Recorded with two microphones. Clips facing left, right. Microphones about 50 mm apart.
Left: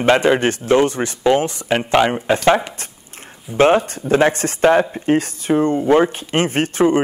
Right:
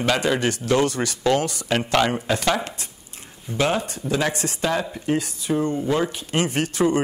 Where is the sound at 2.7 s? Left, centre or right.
Left.